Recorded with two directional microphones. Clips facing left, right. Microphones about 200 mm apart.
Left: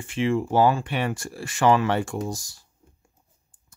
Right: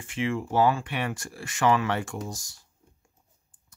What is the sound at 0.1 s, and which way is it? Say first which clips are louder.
Speech: left 5 dB; 30° left (ahead or behind).